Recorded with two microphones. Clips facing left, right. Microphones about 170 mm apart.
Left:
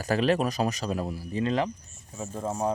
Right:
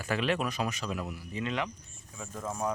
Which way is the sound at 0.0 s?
35° left (ahead or behind).